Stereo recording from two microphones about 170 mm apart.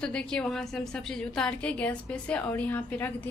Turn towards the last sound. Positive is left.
turn(degrees=10)  # may be behind; listen again after turning